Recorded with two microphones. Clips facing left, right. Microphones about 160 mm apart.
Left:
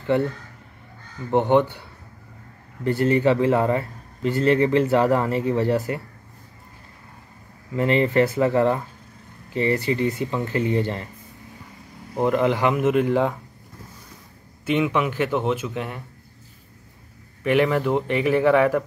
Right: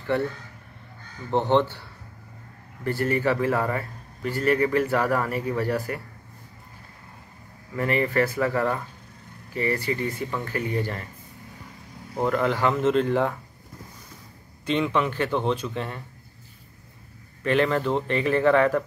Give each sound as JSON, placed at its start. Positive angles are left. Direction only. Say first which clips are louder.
{"t": 1.3, "sound": "a man's voice", "louder": "left 3 dB", "side_deg": 15}
{"t": 7.7, "sound": "a man's voice", "louder": "left 4 dB", "side_deg": 20}
{"t": 12.2, "sound": "speech", "louder": "left 3 dB", "side_deg": 20}
{"t": 14.7, "sound": "speech", "louder": "left 2 dB", "side_deg": 10}
{"t": 17.4, "sound": "speech", "louder": "left 3 dB", "side_deg": 15}